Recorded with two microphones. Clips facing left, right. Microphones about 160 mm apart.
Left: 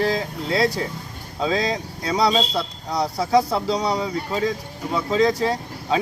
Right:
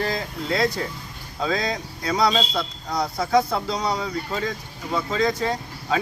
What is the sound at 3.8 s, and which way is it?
Speech, 10° left (ahead or behind).